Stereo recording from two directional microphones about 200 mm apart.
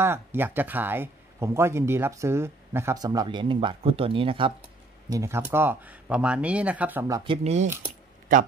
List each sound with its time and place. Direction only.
0.0 s speech: 10° right (ahead or behind); by 4.6 s 25° right (ahead or behind)
5.1 s speech: 15° right (ahead or behind)
7.4 s speech: 35° right (ahead or behind)